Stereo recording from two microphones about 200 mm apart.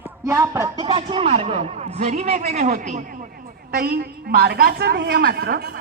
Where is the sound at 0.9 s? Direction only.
25° right (ahead or behind).